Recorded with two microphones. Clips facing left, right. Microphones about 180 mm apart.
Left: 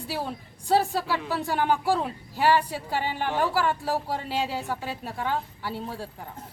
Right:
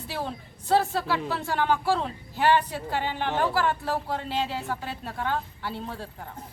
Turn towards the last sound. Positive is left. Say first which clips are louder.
# left 1 dB
turn(degrees=10)  # may be behind; listen again after turning